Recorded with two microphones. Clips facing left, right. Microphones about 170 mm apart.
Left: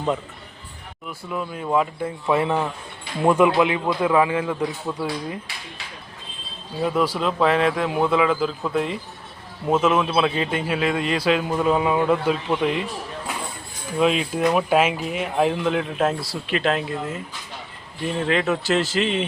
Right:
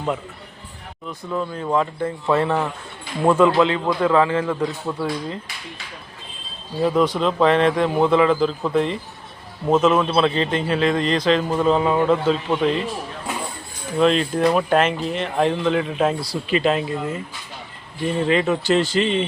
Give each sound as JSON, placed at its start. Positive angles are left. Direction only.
{"t": 1.2, "sound": "a man's voice", "side_deg": 10}
{"t": 6.8, "sound": "a man's voice", "side_deg": 5}
{"t": 14.0, "sound": "a man's voice", "side_deg": 5}
{"t": 18.2, "sound": "speech", "side_deg": 0}